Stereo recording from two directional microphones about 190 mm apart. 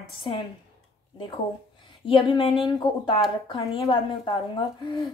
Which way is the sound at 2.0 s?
25° left (ahead or behind).